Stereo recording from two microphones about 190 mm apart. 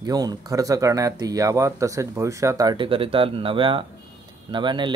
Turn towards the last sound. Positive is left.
turn(degrees=-25)  # may be behind; listen again after turning